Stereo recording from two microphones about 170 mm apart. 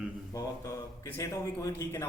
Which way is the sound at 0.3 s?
20° left (ahead or behind).